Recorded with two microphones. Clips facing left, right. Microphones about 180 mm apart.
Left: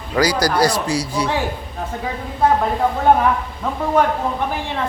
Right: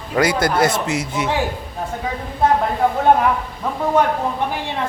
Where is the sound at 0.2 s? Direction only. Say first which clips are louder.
Even; 25° right (ahead or behind).